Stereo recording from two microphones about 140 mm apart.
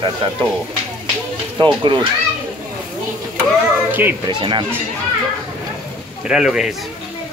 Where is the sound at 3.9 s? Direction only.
15° right (ahead or behind).